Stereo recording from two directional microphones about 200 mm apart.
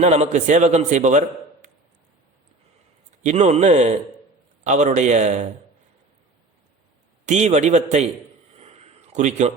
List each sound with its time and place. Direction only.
0.0 s a man's voice: 35° right (ahead or behind)
3.2 s a man's voice: 35° right (ahead or behind)
7.3 s a man's voice: 35° right (ahead or behind)
8.5 s a sound: 30° right (ahead or behind)